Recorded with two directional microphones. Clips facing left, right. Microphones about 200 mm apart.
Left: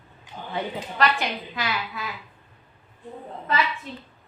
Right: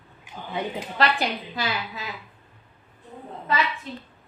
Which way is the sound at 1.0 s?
30° right (ahead or behind).